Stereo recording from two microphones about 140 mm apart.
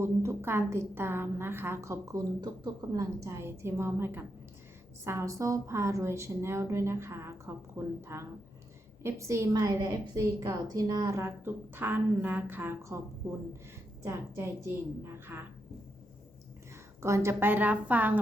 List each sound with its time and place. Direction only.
0.0 s a woman's voice: 20° right (ahead or behind)
14.0 s a woman's voice: 20° right (ahead or behind)
17.0 s a woman's voice: 20° right (ahead or behind)